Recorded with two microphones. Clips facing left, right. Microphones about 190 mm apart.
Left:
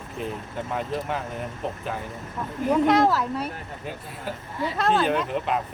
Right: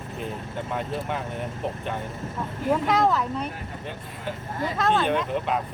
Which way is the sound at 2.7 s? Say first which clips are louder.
Left 3 dB; centre (ahead or behind).